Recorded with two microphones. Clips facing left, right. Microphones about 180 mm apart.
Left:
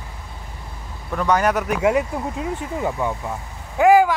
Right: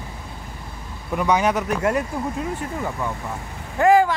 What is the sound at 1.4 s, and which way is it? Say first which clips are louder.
Speech: left 2 dB; 5° left (ahead or behind).